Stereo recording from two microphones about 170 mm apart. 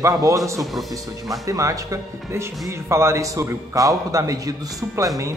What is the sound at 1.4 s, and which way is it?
A man's voice, 20° right (ahead or behind).